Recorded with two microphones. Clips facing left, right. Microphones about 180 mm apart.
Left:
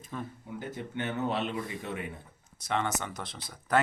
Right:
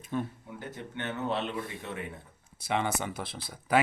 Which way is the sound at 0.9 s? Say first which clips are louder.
Left 1 dB; 5° left (ahead or behind).